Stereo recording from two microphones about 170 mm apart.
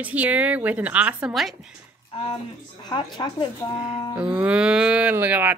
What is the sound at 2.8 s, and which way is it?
Speech, 25° left (ahead or behind).